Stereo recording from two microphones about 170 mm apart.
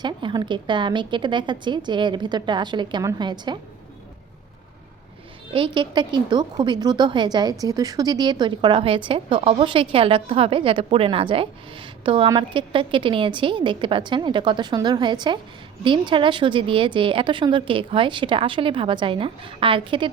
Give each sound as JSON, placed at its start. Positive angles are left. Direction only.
{"t": 0.0, "sound": "a woman's voice", "side_deg": -25}
{"t": 5.5, "sound": "a woman's voice", "side_deg": -30}